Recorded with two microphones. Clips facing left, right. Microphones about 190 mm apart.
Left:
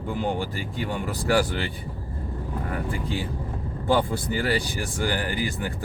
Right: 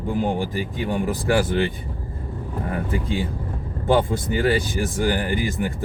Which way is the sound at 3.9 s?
20° right (ahead or behind).